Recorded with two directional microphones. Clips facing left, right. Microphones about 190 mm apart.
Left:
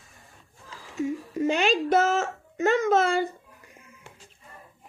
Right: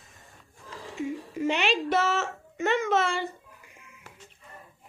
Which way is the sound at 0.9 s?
40° left (ahead or behind).